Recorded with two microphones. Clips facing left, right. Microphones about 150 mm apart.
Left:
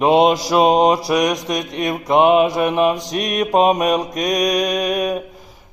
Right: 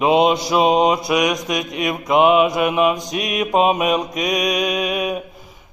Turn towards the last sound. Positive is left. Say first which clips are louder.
# left 2 dB
turn(degrees=40)  # may be behind; listen again after turning